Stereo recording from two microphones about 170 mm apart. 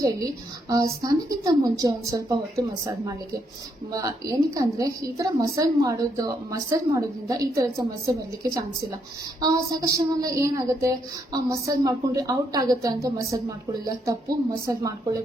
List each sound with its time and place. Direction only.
0.7 s a woman's voice: 20° right (ahead or behind)
3.9 s a woman's voice: 20° right (ahead or behind)
9.4 s a woman's voice: 20° right (ahead or behind)